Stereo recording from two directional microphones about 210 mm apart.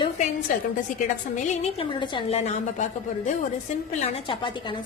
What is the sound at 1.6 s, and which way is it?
A woman's voice, 25° left (ahead or behind).